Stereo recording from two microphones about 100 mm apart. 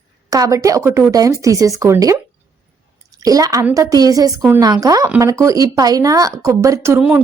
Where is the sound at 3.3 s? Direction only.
35° right (ahead or behind).